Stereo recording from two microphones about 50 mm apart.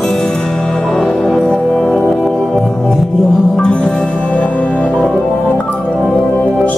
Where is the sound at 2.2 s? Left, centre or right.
Centre.